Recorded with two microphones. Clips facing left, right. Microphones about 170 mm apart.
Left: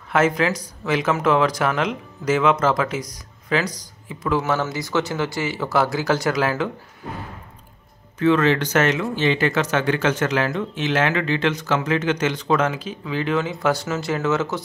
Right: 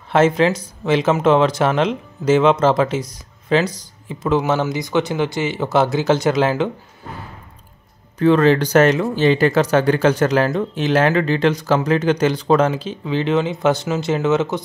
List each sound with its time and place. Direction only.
0.1 s speech: 25° right (ahead or behind)
8.2 s speech: 35° right (ahead or behind); by 14.6 s 20° right (ahead or behind)